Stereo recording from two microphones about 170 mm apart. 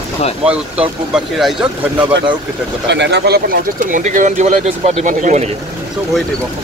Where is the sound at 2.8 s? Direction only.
90° right; by 5.4 s 45° right (ahead or behind).